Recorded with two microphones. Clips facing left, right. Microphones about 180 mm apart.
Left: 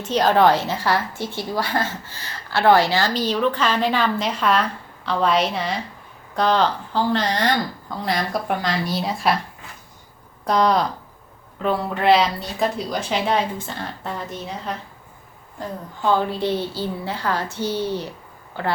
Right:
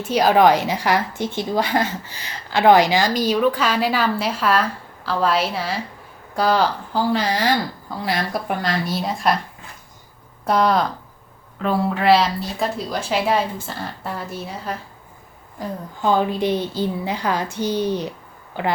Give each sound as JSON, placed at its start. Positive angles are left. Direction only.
{"t": 0.0, "sound": "a woman's voice", "side_deg": -10}
{"t": 10.4, "sound": "a woman's voice", "side_deg": -5}
{"t": 16.0, "sound": "a woman's voice", "side_deg": -15}